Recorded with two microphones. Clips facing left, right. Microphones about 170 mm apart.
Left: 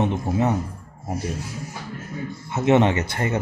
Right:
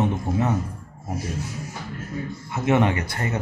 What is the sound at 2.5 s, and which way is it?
Speech, 20° left (ahead or behind).